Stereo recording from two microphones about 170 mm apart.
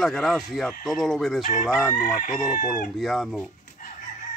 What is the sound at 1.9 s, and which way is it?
Chicken, 50° left (ahead or behind).